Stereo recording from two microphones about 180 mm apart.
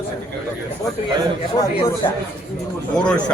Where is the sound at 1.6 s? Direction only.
30° left (ahead or behind).